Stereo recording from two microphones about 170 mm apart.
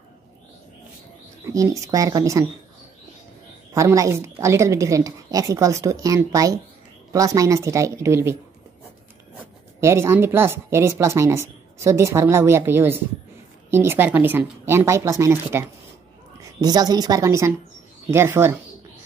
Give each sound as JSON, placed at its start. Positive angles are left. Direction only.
{"t": 1.4, "sound": "a woman's voice", "side_deg": -20}
{"t": 3.7, "sound": "a woman's voice", "side_deg": -20}
{"t": 9.8, "sound": "a woman's voice", "side_deg": -15}
{"t": 16.6, "sound": "a woman's voice", "side_deg": -25}